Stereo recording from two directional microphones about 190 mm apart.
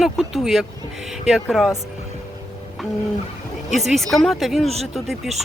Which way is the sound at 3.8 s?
Centre (ahead or behind).